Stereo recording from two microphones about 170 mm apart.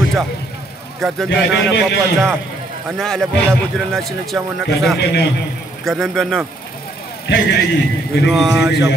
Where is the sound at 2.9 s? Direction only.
5° left (ahead or behind).